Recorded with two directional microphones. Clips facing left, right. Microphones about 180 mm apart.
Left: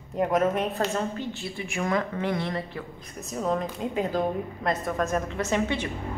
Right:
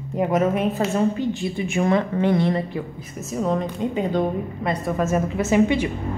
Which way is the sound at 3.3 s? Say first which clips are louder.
Right 4 dB; centre (ahead or behind).